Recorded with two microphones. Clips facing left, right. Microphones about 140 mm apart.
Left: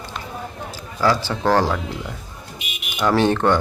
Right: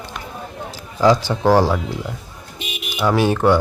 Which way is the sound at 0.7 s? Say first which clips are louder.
Right 5 dB; 15° right (ahead or behind).